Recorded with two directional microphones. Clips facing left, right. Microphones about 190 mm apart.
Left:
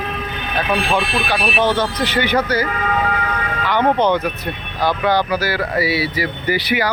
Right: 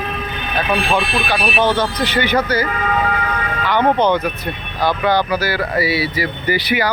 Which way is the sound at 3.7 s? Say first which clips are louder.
Right 1 dB; 10° left (ahead or behind).